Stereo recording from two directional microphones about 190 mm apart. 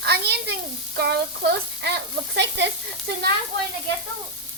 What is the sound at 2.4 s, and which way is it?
Sizzle, 65° right (ahead or behind).